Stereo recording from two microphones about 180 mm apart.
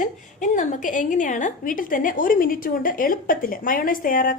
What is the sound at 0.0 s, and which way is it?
A woman's voice, 45° left (ahead or behind).